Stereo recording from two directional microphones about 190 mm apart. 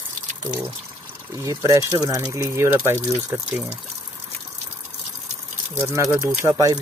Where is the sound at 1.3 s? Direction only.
15° right (ahead or behind).